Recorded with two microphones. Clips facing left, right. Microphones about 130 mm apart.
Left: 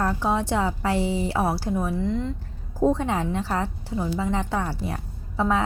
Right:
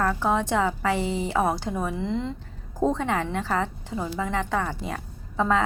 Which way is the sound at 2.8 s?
15° left (ahead or behind).